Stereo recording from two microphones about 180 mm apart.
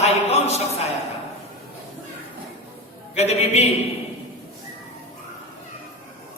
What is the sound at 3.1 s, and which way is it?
Speech, 35° left (ahead or behind).